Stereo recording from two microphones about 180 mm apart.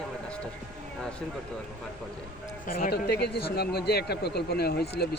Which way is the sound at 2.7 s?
55° left (ahead or behind).